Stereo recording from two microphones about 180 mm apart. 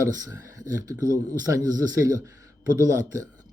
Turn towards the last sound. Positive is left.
turn(degrees=-20)  # may be behind; listen again after turning